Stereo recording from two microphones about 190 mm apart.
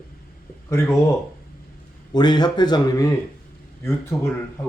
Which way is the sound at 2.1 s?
20° left (ahead or behind).